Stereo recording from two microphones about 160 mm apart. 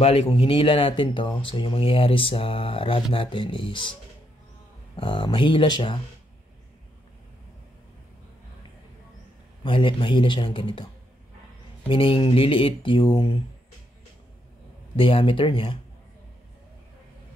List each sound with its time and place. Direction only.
0.0 s speech: 40° left (ahead or behind)
4.9 s speech: 30° left (ahead or behind)
9.6 s speech: 30° left (ahead or behind)
11.9 s speech: 35° left (ahead or behind)
15.0 s speech: 35° left (ahead or behind)